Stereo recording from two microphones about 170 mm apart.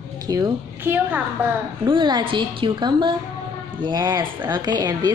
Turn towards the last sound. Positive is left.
turn(degrees=-25)  # may be behind; listen again after turning